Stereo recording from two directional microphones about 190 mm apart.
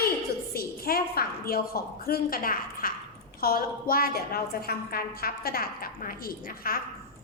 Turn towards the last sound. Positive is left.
turn(degrees=50)  # may be behind; listen again after turning